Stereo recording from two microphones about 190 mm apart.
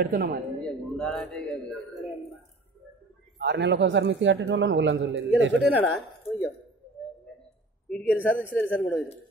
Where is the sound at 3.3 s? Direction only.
65° right (ahead or behind).